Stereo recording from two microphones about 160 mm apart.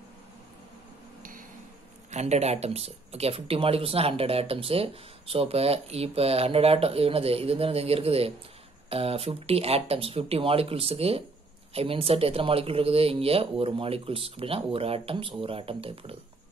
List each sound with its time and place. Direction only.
2.0 s speech: 45° right (ahead or behind)